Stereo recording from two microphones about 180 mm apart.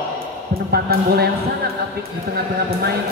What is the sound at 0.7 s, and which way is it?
Speech, 60° right (ahead or behind).